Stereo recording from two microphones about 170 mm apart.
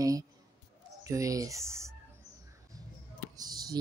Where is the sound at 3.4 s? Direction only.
20° right (ahead or behind).